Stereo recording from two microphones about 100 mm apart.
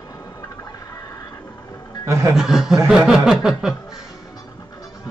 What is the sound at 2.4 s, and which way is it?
Speech, 5° right (ahead or behind).